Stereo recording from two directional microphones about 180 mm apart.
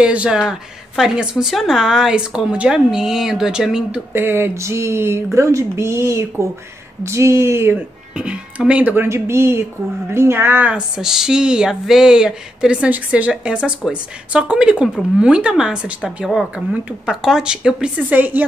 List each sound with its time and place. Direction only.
0.0 s speech: 5° right (ahead or behind)